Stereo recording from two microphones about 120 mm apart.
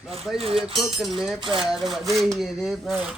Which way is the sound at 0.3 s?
55° right (ahead or behind).